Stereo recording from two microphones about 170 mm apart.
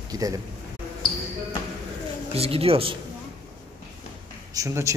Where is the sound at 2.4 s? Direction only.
35° right (ahead or behind).